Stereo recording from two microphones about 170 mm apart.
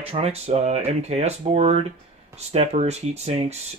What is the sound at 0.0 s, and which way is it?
Speech, 35° right (ahead or behind).